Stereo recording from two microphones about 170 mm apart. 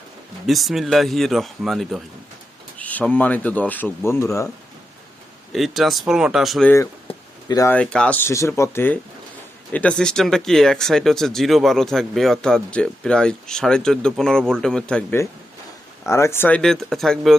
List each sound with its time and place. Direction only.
0.4 s speech: centre (ahead or behind); by 4.4 s 15° left (ahead or behind)
5.5 s speech: centre (ahead or behind)
7.1 s a sound: 30° left (ahead or behind)
7.4 s speech: 20° left (ahead or behind)
7.7 s speech: 5° left (ahead or behind)
16.0 s speech: 15° left (ahead or behind); by 17.3 s centre (ahead or behind)